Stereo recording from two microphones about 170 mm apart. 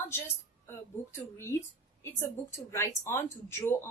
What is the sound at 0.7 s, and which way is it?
Speech, 15° left (ahead or behind).